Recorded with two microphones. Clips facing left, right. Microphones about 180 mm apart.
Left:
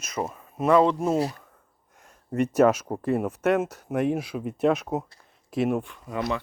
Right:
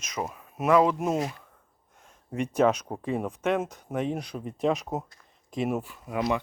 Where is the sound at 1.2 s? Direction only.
35° left (ahead or behind).